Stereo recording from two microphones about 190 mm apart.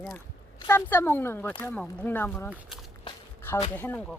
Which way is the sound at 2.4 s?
5° right (ahead or behind).